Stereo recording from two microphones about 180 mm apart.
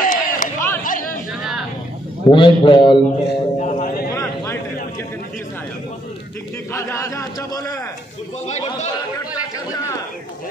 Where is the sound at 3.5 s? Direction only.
45° left (ahead or behind).